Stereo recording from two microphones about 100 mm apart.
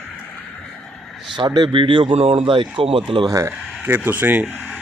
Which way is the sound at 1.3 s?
50° right (ahead or behind).